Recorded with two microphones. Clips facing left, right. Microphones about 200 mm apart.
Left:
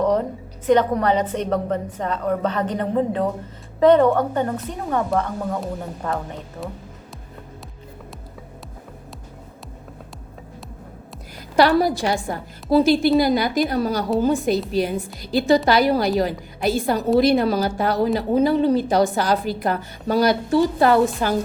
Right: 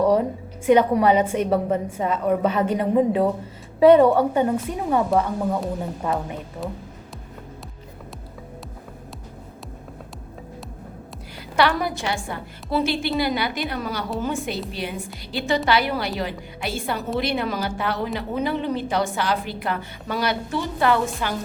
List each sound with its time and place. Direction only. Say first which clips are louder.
0.0 s a woman's voice: right 1 dB; 10° right (ahead or behind)
11.5 s a woman's voice: left 5 dB; 35° left (ahead or behind)